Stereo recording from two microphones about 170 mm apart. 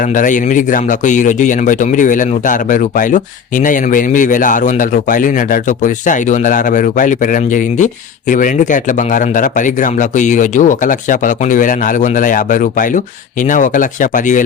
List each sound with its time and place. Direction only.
0.1 s a man's voice: 50° left (ahead or behind)